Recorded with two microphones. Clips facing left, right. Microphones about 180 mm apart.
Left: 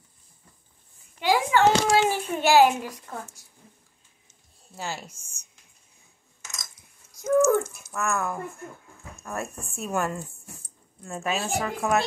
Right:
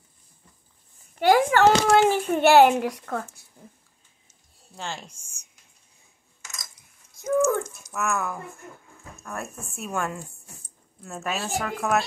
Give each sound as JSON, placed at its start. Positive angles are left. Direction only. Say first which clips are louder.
{"t": 1.2, "sound": "a sound", "louder": "right 4 dB", "side_deg": -55}
{"t": 1.6, "sound": "a child's voice", "louder": "right 3 dB", "side_deg": -55}
{"t": 4.7, "sound": "a woman's voice", "louder": "left 1 dB", "side_deg": 5}
{"t": 5.1, "sound": "speech", "louder": "left 1 dB", "side_deg": -10}
{"t": 7.2, "sound": "a sound", "louder": "left 2 dB", "side_deg": 5}
{"t": 7.8, "sound": "a woman's voice", "louder": "even", "side_deg": -5}